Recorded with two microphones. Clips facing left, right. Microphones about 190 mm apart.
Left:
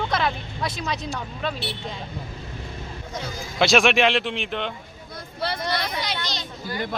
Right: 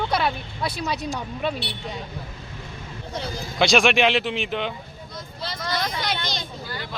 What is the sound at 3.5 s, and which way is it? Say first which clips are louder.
Speech: even; centre (ahead or behind).